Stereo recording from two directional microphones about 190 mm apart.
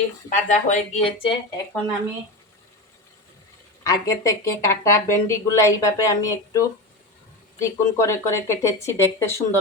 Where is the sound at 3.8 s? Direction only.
20° left (ahead or behind).